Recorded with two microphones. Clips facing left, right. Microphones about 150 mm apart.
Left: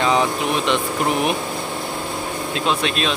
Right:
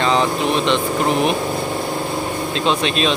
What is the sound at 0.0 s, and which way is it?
Vehicle, 10° left (ahead or behind).